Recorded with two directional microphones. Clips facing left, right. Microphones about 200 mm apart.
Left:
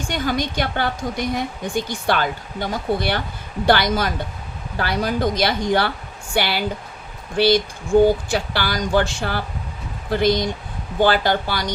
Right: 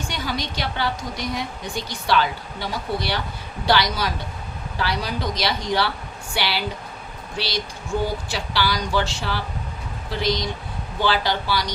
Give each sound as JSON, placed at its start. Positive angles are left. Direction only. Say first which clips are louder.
{"t": 0.1, "sound": "a woman's voice", "louder": "left 9 dB", "side_deg": 50}